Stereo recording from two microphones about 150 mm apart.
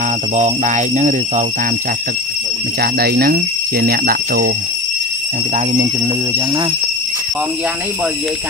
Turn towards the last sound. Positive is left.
turn(degrees=-30)  # may be behind; listen again after turning